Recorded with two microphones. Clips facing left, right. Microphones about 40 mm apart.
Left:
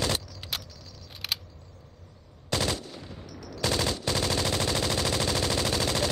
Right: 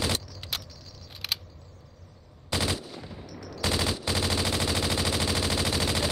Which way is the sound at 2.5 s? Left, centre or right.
Centre.